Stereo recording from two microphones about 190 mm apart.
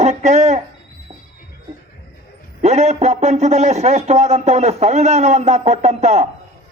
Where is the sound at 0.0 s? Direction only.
35° right (ahead or behind).